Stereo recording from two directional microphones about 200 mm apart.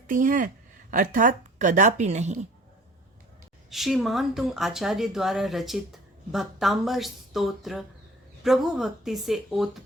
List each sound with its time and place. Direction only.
0.1 s a woman's voice: 40° right (ahead or behind)
3.7 s speech: centre (ahead or behind)